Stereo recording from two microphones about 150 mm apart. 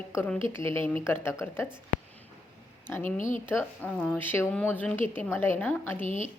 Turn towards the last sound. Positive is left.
turn(degrees=55)  # may be behind; listen again after turning